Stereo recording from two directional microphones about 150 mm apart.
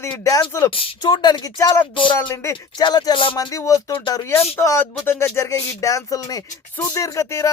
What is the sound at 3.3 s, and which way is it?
Speech, 20° left (ahead or behind).